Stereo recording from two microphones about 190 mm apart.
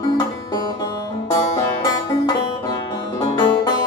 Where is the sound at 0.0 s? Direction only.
20° left (ahead or behind).